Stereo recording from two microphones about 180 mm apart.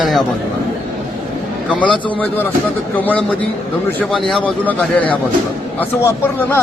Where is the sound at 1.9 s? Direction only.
25° left (ahead or behind).